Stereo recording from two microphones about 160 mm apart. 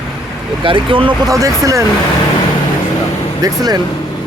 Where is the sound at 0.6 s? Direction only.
30° right (ahead or behind).